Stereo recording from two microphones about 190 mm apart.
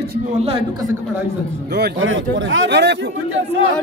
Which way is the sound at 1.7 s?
75° right (ahead or behind).